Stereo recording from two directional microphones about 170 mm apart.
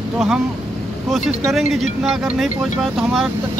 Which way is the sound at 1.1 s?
Centre (ahead or behind).